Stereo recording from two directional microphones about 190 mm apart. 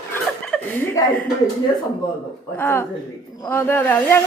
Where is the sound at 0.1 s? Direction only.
10° left (ahead or behind).